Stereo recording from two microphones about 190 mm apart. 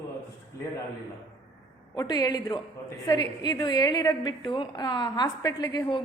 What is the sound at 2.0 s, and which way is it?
A woman's voice, 20° left (ahead or behind).